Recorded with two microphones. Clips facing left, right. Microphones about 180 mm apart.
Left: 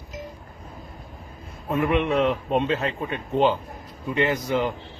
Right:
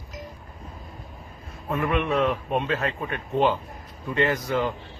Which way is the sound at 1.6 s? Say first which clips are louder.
Left 3 dB; 20° left (ahead or behind).